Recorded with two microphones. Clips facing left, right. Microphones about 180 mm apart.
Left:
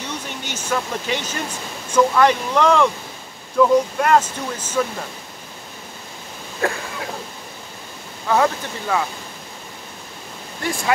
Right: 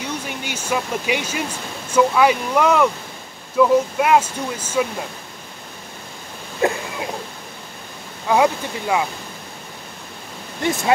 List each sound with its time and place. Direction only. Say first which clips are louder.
0.0 s speech: right 2 dB; 10° right (ahead or behind)
6.6 s a sound: right 3 dB; 20° right (ahead or behind)
8.3 s speech: right 2 dB; 15° right (ahead or behind)
10.6 s speech: right 4 dB; 20° right (ahead or behind)